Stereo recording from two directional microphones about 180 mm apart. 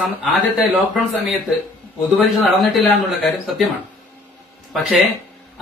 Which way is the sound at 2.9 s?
Centre (ahead or behind).